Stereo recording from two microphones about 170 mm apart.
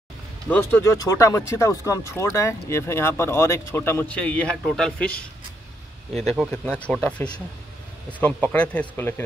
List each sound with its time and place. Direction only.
0.5 s speech: 10° left (ahead or behind)
6.5 s speech: 5° left (ahead or behind)